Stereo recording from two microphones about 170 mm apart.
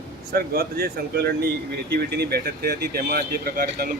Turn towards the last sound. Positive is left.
turn(degrees=-65)  # may be behind; listen again after turning